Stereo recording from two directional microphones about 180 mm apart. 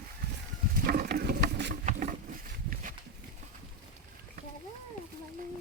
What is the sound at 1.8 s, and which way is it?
Patter, 45° right (ahead or behind).